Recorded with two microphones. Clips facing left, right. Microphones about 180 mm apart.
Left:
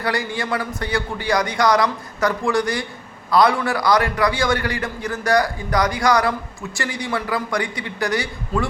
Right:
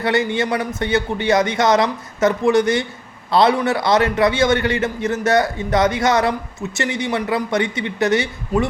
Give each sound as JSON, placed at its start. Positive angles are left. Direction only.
{"t": 0.0, "sound": "a man's voice", "side_deg": -20}